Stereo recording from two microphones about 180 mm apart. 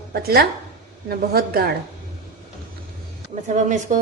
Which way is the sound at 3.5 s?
45° right (ahead or behind).